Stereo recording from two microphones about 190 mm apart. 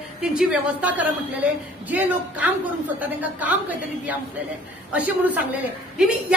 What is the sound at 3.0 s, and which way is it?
Speech, 10° right (ahead or behind).